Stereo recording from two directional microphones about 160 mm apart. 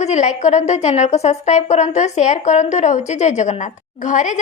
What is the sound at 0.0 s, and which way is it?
A woman's voice, 45° left (ahead or behind).